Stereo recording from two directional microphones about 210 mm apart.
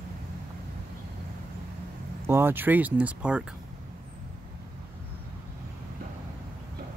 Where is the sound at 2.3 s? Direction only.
10° right (ahead or behind).